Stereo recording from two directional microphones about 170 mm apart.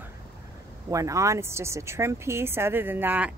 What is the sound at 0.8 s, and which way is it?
Speech, 20° right (ahead or behind).